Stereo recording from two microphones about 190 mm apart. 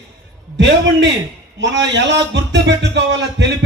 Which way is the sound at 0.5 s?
70° right (ahead or behind).